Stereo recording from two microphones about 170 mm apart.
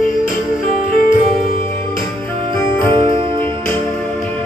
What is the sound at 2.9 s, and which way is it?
Music, 30° right (ahead or behind).